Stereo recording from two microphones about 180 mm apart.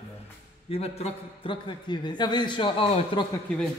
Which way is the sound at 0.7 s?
35° left (ahead or behind).